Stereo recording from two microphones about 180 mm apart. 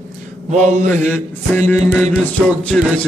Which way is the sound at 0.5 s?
40° right (ahead or behind).